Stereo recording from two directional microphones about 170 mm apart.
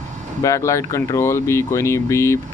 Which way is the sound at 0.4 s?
20° left (ahead or behind).